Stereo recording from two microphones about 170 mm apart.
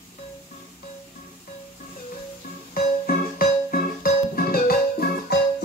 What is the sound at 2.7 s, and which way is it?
Music, 60° left (ahead or behind).